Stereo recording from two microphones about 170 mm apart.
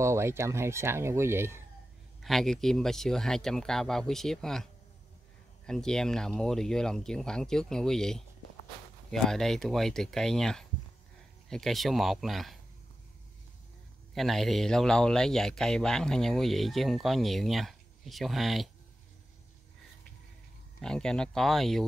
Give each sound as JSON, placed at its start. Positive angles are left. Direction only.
{"t": 0.0, "sound": "speech", "side_deg": -15}
{"t": 2.2, "sound": "speech", "side_deg": 0}
{"t": 5.7, "sound": "speech", "side_deg": 5}
{"t": 14.1, "sound": "speech", "side_deg": 0}
{"t": 20.8, "sound": "speech", "side_deg": 5}